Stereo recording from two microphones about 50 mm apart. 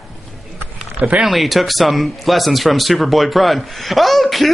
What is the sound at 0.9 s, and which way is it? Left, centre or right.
Speech, right.